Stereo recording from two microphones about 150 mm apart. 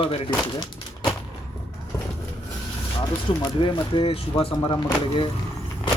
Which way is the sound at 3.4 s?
30° left (ahead or behind).